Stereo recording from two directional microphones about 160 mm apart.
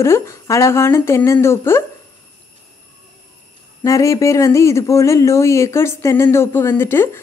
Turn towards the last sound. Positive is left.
turn(degrees=15)  # may be behind; listen again after turning